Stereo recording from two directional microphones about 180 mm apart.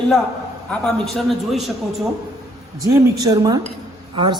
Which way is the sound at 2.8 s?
20° right (ahead or behind).